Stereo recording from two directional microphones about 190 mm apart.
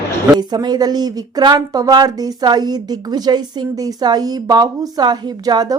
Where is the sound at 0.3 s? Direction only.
20° right (ahead or behind).